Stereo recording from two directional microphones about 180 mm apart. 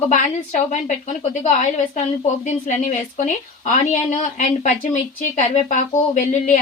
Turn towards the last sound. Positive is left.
turn(degrees=40)  # may be behind; listen again after turning